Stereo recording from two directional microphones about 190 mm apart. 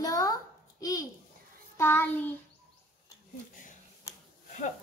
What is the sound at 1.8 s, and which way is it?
Child singing, 10° left (ahead or behind).